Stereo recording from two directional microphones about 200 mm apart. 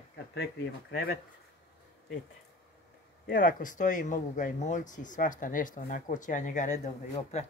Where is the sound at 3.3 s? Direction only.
45° left (ahead or behind).